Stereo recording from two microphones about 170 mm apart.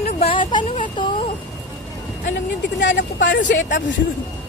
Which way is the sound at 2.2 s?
90° left.